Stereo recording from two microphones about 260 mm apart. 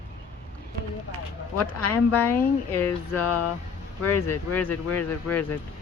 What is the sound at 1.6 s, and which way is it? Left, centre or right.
Speech, left.